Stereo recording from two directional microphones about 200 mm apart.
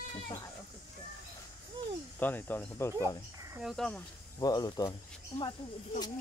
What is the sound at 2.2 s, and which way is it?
Speech, 10° left (ahead or behind).